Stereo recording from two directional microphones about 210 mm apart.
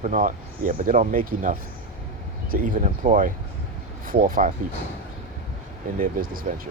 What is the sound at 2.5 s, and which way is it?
Speech, 40° right (ahead or behind).